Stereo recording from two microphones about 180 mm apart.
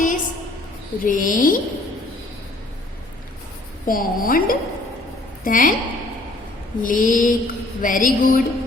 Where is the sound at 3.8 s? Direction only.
50° left (ahead or behind).